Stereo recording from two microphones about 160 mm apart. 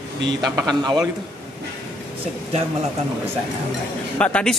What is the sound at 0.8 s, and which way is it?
Speech, 25° right (ahead or behind).